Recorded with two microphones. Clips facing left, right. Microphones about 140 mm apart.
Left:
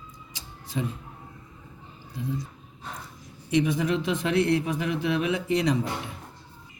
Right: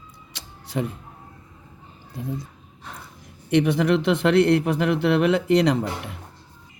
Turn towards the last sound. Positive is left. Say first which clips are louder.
# right 4 dB
turn(degrees=-65)  # may be behind; listen again after turning